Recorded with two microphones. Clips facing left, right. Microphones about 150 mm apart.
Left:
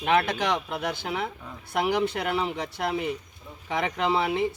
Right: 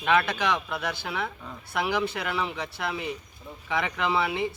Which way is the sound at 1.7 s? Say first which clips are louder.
Left 3 dB; 45° left (ahead or behind).